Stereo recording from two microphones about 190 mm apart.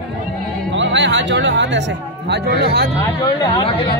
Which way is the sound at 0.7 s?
70° right (ahead or behind).